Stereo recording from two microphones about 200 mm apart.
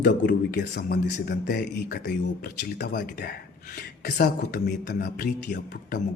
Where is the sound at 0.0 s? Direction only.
45° left (ahead or behind).